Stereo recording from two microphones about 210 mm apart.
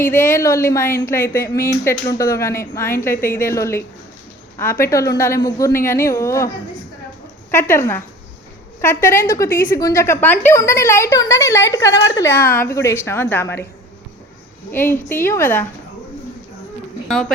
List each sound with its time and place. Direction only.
0.1 s speech: 40° left (ahead or behind)
0.3 s a woman's voice: 15° left (ahead or behind)
7.5 s a woman's voice: 10° left (ahead or behind)
14.7 s a woman's voice: 10° left (ahead or behind)
17.1 s speech: centre (ahead or behind)